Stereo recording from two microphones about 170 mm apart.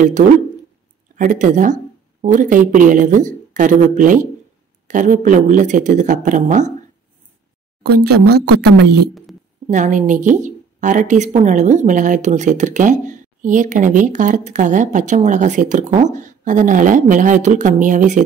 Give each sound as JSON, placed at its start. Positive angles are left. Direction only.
{"t": 1.1, "sound": "a woman's voice", "side_deg": -50}
{"t": 7.8, "sound": "speech", "side_deg": -70}
{"t": 9.7, "sound": "a woman's voice", "side_deg": -45}